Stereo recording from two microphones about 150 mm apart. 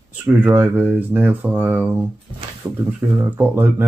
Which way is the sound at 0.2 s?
10° right (ahead or behind).